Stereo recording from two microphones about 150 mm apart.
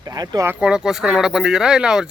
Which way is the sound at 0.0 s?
25° right (ahead or behind).